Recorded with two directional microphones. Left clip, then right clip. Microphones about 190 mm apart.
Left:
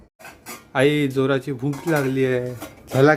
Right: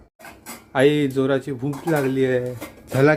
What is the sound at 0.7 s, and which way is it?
Speech, centre (ahead or behind).